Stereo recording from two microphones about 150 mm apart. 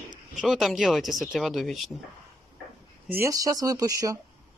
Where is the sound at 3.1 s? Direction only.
20° right (ahead or behind).